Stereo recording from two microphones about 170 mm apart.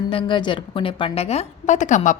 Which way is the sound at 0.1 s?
30° left (ahead or behind).